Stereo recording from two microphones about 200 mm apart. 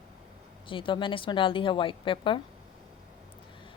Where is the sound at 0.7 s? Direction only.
25° left (ahead or behind).